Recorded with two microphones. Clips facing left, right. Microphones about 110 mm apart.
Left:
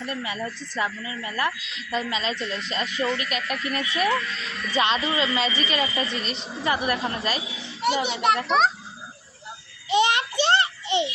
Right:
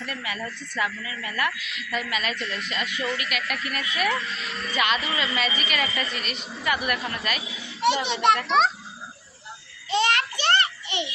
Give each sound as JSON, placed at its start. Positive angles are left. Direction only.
{"t": 0.0, "sound": "speech", "side_deg": 25}
{"t": 8.0, "sound": "a child's voice", "side_deg": 5}
{"t": 9.9, "sound": "a sound", "side_deg": 20}